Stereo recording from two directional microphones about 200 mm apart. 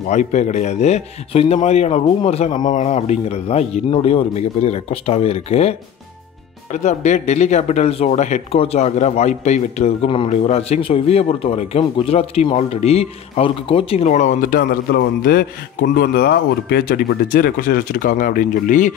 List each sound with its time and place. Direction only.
0.1 s speech: 35° left (ahead or behind)